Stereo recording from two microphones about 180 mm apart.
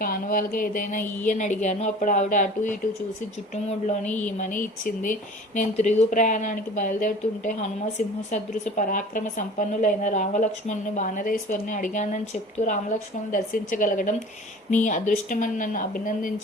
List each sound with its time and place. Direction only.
0.0 s a woman's voice: 50° left (ahead or behind)